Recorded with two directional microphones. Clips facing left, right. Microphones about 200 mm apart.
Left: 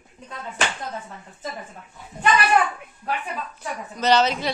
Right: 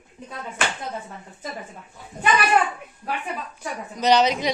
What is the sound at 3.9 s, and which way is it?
Speech, 15° right (ahead or behind).